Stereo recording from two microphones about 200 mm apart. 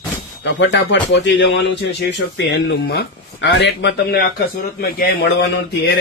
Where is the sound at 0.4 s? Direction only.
60° left (ahead or behind).